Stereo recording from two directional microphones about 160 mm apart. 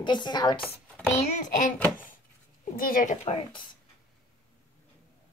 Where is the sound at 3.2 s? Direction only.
35° left (ahead or behind).